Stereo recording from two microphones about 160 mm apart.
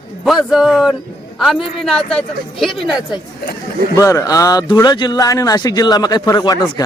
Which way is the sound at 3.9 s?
20° left (ahead or behind).